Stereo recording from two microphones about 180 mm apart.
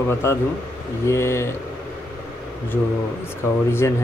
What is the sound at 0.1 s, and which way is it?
Speech, 15° left (ahead or behind).